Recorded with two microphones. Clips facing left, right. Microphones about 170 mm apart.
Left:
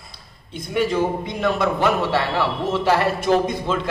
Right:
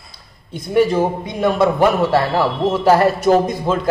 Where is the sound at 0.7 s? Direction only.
45° right (ahead or behind).